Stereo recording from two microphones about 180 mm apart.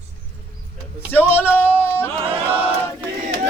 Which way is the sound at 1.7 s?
15° left (ahead or behind).